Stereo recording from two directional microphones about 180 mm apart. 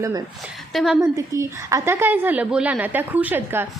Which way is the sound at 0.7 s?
Centre (ahead or behind).